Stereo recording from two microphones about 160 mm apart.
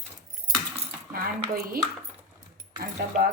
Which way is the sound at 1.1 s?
65° right (ahead or behind).